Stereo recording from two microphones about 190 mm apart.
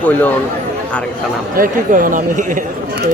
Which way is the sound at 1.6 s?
45° right (ahead or behind).